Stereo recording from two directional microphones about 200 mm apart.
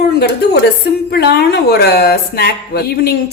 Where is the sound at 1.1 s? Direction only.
55° left (ahead or behind).